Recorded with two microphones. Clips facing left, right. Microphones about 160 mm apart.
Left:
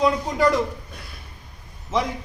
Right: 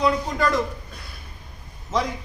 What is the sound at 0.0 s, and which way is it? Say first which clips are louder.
Speech: left 2 dB; 10° left (ahead or behind).